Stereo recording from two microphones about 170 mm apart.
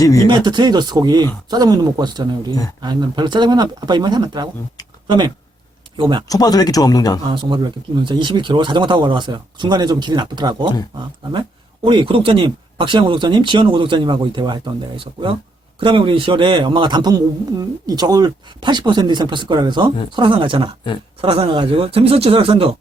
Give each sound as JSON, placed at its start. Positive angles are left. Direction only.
{"t": 0.0, "sound": "speech", "side_deg": 20}
{"t": 0.3, "sound": "a man's voice", "side_deg": -25}
{"t": 6.2, "sound": "speech", "side_deg": 20}
{"t": 7.3, "sound": "a man's voice", "side_deg": -30}
{"t": 11.9, "sound": "a man's voice", "side_deg": -30}